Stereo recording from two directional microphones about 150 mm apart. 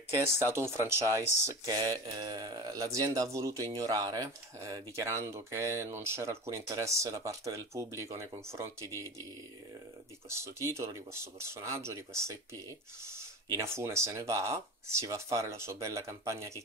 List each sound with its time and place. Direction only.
0.1 s speech: 15° right (ahead or behind)
10.3 s speech: 20° right (ahead or behind)
13.6 s speech: 20° right (ahead or behind)